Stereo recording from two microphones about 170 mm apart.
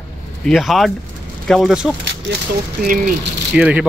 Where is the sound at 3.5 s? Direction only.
5° right (ahead or behind).